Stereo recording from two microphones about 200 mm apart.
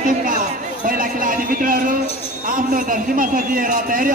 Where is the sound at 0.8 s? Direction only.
40° right (ahead or behind).